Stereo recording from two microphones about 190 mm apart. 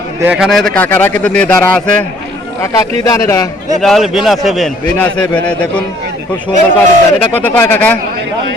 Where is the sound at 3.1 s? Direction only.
15° left (ahead or behind).